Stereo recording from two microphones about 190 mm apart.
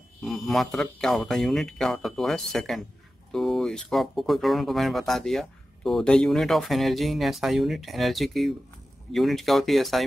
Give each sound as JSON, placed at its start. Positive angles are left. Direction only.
{"t": 0.2, "sound": "speech", "side_deg": 0}